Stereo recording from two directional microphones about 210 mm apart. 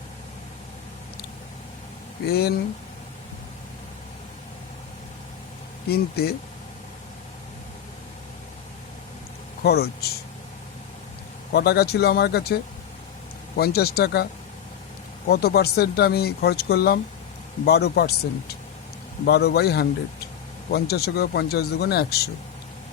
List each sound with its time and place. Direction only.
2.2 s speech: 50° left (ahead or behind)
5.9 s speech: 50° left (ahead or behind)
9.6 s speech: 50° left (ahead or behind)
11.5 s speech: 50° left (ahead or behind)
13.6 s speech: 50° left (ahead or behind)
15.3 s speech: 50° left (ahead or behind)